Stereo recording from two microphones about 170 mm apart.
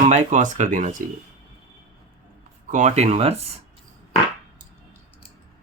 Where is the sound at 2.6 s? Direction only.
45° right (ahead or behind).